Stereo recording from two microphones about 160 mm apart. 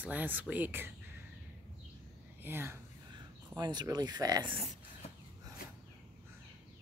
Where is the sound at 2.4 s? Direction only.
15° right (ahead or behind).